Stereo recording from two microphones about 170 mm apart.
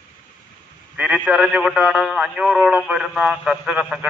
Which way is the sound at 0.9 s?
10° right (ahead or behind).